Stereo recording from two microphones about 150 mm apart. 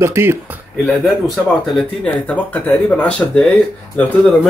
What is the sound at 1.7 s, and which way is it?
Speech, 10° left (ahead or behind).